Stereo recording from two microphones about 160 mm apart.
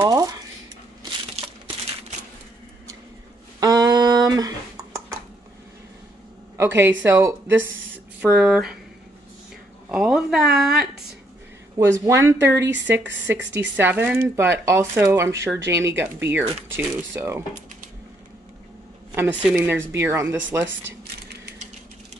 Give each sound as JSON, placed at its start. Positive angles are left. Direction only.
{"t": 0.0, "sound": "a sound", "side_deg": -20}
{"t": 3.5, "sound": "a sound", "side_deg": -25}
{"t": 6.5, "sound": "speech", "side_deg": -15}
{"t": 8.2, "sound": "speech", "side_deg": -5}
{"t": 9.8, "sound": "speech", "side_deg": -5}
{"t": 11.8, "sound": "speech", "side_deg": -15}
{"t": 19.1, "sound": "speech", "side_deg": -15}